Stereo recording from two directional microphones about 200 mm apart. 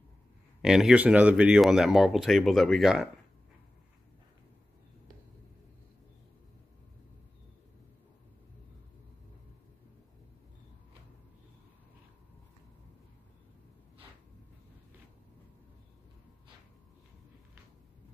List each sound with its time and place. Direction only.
0.6 s speech: 5° right (ahead or behind)